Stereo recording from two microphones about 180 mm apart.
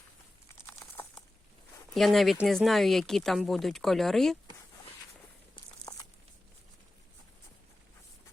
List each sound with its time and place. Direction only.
0.7 s crumpling: 15° left (ahead or behind)
1.9 s speech: centre (ahead or behind)
5.9 s a sound: 20° left (ahead or behind)